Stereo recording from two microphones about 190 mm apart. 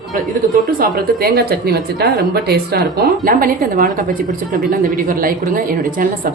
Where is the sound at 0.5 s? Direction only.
50° right (ahead or behind).